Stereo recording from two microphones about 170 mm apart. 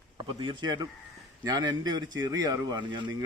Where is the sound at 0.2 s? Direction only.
30° right (ahead or behind).